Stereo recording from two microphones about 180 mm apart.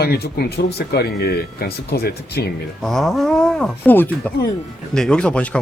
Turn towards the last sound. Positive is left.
turn(degrees=5)  # may be behind; listen again after turning